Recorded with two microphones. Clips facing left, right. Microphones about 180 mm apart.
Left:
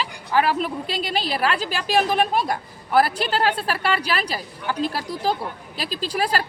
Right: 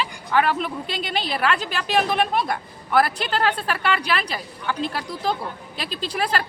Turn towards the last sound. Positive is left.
turn(degrees=35)  # may be behind; listen again after turning